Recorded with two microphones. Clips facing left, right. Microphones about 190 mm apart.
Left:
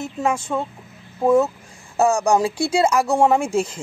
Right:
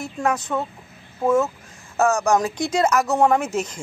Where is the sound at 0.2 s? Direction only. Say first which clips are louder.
Left 1 dB; 5° left (ahead or behind).